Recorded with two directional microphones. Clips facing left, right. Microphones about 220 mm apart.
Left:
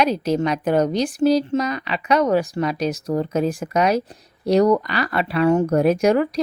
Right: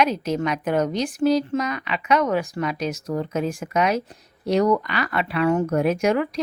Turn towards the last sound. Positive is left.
turn(degrees=35)  # may be behind; listen again after turning